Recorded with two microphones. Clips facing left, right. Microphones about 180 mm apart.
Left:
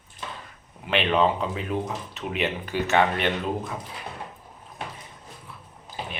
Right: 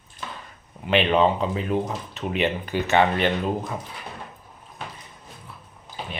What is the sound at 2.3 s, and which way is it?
Speech, centre (ahead or behind).